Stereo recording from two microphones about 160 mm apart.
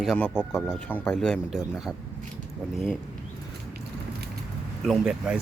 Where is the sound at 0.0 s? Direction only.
5° left (ahead or behind).